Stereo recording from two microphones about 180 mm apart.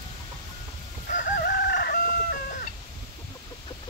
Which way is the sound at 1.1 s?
50° left (ahead or behind).